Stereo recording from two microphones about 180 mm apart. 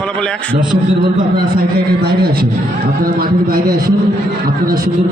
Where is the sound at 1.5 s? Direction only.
60° right (ahead or behind).